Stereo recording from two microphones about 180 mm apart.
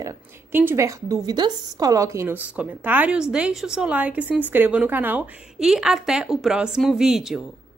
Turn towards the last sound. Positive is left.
turn(degrees=0)  # may be behind; listen again after turning